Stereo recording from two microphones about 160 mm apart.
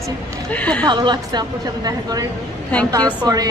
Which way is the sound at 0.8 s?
30° right (ahead or behind).